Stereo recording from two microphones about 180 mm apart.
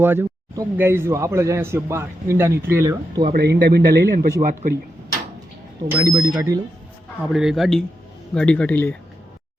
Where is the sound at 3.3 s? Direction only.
55° right (ahead or behind).